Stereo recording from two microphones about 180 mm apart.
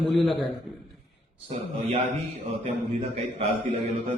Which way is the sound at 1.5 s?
35° right (ahead or behind).